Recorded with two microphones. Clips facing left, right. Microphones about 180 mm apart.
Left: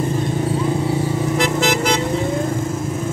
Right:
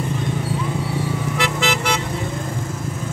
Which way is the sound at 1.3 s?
40° left (ahead or behind).